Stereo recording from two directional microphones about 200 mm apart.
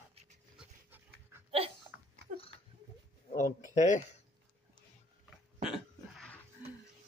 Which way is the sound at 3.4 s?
40° left (ahead or behind).